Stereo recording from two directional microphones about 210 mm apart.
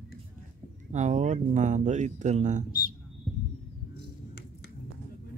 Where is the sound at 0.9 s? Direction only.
35° right (ahead or behind).